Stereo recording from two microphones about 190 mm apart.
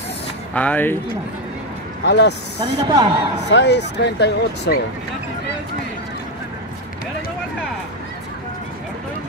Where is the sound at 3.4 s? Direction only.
65° left (ahead or behind).